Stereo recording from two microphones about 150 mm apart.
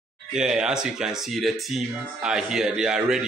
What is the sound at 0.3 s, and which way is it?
Speech, 5° right (ahead or behind).